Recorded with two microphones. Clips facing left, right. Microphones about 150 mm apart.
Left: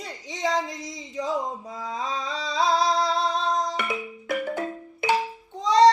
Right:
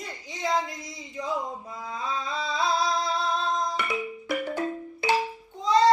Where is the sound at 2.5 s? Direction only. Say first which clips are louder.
Left 4 dB; 35° left (ahead or behind).